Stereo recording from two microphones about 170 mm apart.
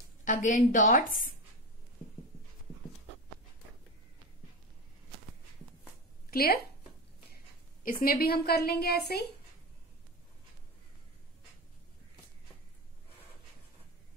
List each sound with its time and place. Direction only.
0.2 s a woman's voice: 50° left (ahead or behind)
6.3 s a woman's voice: 65° left (ahead or behind)
7.8 s a woman's voice: 60° left (ahead or behind)